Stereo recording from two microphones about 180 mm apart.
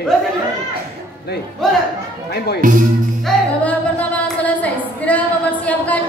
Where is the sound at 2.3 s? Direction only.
65° left (ahead or behind).